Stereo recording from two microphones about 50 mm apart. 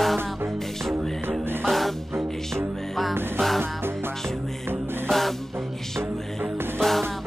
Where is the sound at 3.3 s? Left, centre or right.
Centre.